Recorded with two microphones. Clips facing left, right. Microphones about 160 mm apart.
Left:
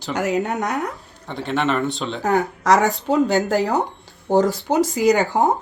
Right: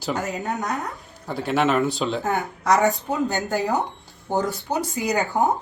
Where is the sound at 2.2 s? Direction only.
90° left.